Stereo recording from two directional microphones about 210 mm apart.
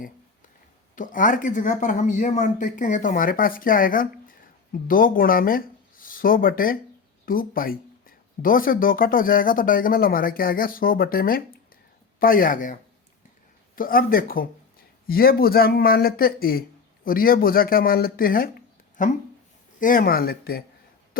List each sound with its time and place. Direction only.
0.9 s speech: 40° left (ahead or behind)
13.7 s speech: 45° left (ahead or behind)